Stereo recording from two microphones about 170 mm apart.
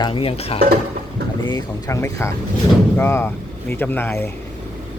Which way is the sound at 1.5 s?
20° left (ahead or behind).